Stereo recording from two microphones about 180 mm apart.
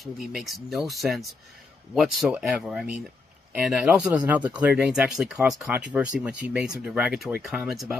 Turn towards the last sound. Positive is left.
turn(degrees=0)  # may be behind; listen again after turning